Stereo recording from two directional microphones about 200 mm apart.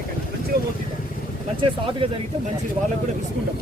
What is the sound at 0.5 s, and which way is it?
Speech, 55° right (ahead or behind).